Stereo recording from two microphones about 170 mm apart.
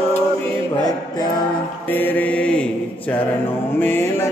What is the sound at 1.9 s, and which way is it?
Mantra, 10° left (ahead or behind).